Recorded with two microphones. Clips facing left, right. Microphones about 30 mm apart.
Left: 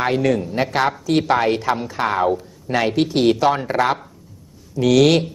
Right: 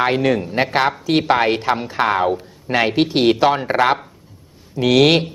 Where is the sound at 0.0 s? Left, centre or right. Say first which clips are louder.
Right 2 dB; right.